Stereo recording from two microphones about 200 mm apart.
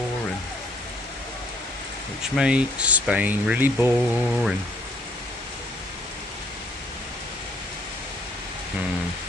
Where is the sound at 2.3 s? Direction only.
5° right (ahead or behind).